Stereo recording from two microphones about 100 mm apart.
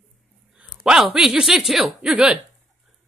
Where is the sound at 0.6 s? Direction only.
5° right (ahead or behind).